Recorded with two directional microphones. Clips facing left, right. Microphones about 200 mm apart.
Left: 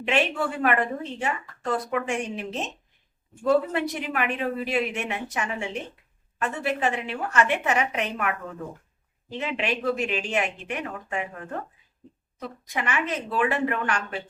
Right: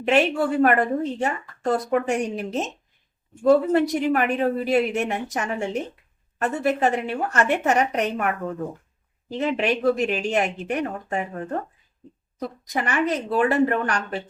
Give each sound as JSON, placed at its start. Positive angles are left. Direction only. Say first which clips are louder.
{"t": 0.0, "sound": "a woman's voice", "louder": "right 5 dB", "side_deg": -40}